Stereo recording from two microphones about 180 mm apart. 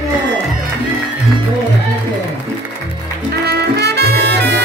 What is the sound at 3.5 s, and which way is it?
Music, 65° right (ahead or behind).